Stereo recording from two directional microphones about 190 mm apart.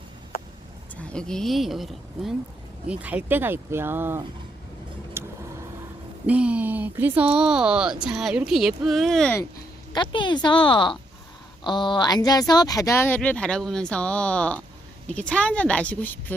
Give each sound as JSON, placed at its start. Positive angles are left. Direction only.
{"t": 0.9, "sound": "speech", "side_deg": 5}
{"t": 5.2, "sound": "vehicle", "side_deg": -15}
{"t": 6.2, "sound": "speech", "side_deg": -5}
{"t": 9.9, "sound": "a woman's voice", "side_deg": 25}